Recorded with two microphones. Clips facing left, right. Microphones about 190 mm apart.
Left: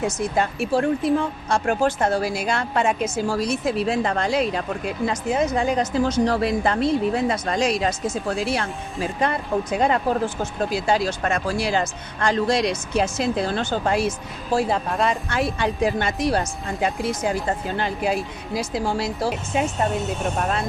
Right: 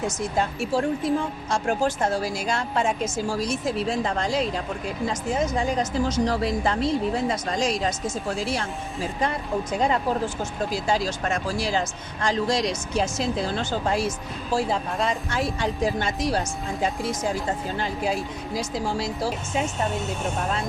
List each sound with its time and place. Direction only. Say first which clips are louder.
0.3 s speech: left 2 dB; 60° left (ahead or behind)